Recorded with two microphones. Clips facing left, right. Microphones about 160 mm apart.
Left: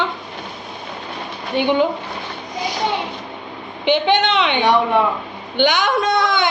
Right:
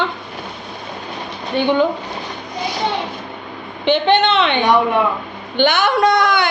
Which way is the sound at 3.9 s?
15° left (ahead or behind).